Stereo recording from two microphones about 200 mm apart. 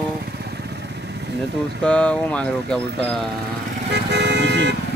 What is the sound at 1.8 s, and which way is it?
Speech, 5° left (ahead or behind).